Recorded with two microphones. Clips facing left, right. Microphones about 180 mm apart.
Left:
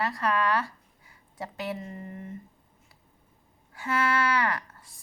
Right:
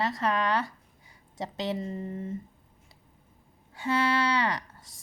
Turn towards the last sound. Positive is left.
turn(degrees=-20)  # may be behind; listen again after turning